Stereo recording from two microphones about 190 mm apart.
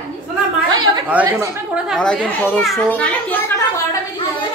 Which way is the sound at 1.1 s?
10° right (ahead or behind).